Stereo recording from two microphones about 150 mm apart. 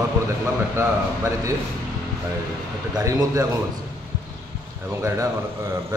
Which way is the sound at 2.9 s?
25° right (ahead or behind).